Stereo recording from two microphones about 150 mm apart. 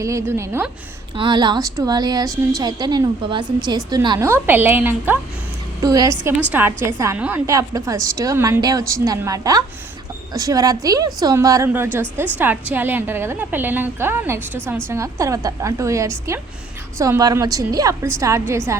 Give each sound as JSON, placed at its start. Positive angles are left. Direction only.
{"t": 0.0, "sound": "a woman's voice", "side_deg": -20}
{"t": 1.1, "sound": "a woman's voice", "side_deg": -30}
{"t": 4.3, "sound": "a woman's voice", "side_deg": -15}
{"t": 5.8, "sound": "a woman's voice", "side_deg": -25}